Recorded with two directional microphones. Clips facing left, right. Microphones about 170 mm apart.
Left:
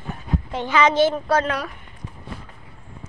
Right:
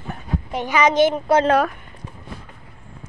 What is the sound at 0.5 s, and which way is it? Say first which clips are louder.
Speech: right 1 dB; 15° right (ahead or behind).